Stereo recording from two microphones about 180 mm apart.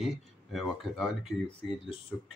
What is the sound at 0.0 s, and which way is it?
Speech, centre (ahead or behind).